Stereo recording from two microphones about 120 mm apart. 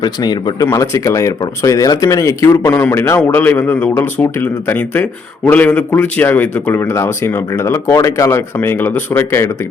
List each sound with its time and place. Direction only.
0.0 s a man's voice: 35° left (ahead or behind); by 9.5 s 20° left (ahead or behind)